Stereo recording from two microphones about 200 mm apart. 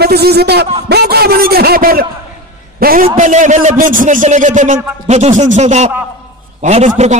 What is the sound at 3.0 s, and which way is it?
A man's voice, 35° right (ahead or behind).